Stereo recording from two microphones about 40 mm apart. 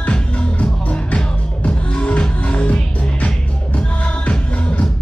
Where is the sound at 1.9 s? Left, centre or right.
Left.